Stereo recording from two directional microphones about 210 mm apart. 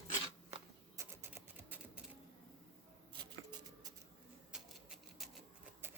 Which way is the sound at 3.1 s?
20° right (ahead or behind).